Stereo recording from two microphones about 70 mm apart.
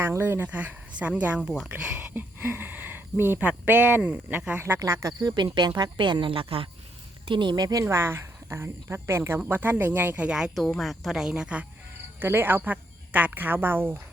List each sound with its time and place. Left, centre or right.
0.0 s speech: right
0.4 s speech: right
1.4 s speech: centre
2.0 s speech: right
4.9 s speech: right
5.2 s speech: right
7.4 s speech: right
7.9 s speech: right
10.2 s speech: centre
12.2 s speech: right